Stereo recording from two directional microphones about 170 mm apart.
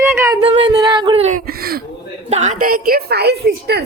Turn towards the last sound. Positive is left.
turn(degrees=-75)  # may be behind; listen again after turning